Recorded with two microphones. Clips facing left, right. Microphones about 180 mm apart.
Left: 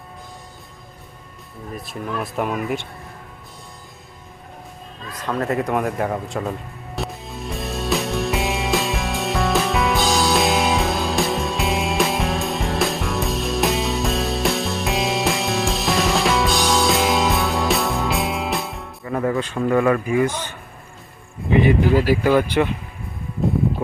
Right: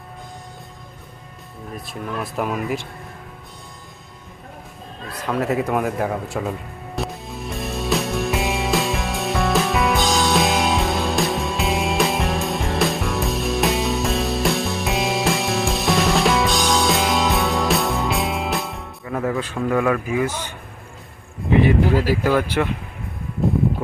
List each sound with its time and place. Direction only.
1.7 s speech: centre (ahead or behind)
5.1 s speech: 10° right (ahead or behind)
6.9 s music: centre (ahead or behind)
22.2 s speech: 15° left (ahead or behind)